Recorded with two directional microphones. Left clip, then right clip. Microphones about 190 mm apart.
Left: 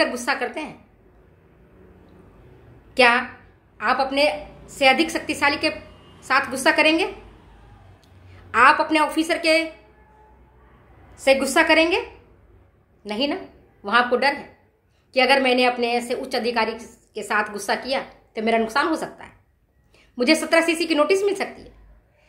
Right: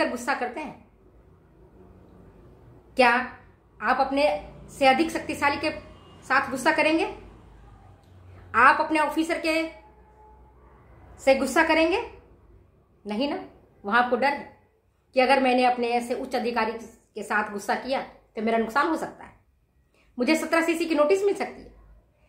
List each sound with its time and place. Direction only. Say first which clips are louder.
0.0 s a woman's voice: left 4 dB; 15° left (ahead or behind)
2.9 s a woman's voice: left 4 dB; 15° left (ahead or behind)
8.5 s a woman's voice: left 3 dB; 15° left (ahead or behind)
11.2 s a woman's voice: left 4 dB; 15° left (ahead or behind)
13.0 s a woman's voice: left 4 dB; 15° left (ahead or behind)